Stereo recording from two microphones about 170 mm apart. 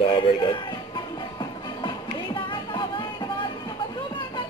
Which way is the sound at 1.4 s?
25° left (ahead or behind).